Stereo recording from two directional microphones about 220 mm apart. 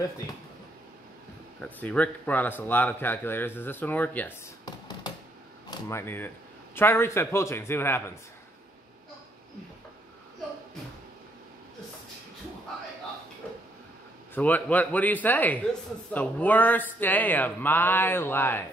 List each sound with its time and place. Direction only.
1.6 s speech: 5° left (ahead or behind)
4.6 s a sound: 20° left (ahead or behind)
5.7 s a man's voice: 10° left (ahead or behind)
14.3 s speech: 5° left (ahead or behind)